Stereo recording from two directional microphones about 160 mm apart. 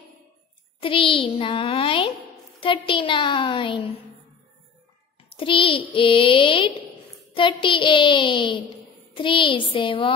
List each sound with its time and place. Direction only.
0.7 s a woman's voice: 35° left (ahead or behind)
5.3 s a woman's voice: 35° left (ahead or behind)